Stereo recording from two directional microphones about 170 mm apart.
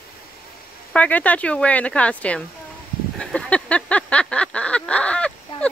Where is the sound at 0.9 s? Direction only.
10° left (ahead or behind).